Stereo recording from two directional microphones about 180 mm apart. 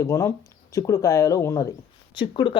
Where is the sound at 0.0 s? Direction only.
15° left (ahead or behind).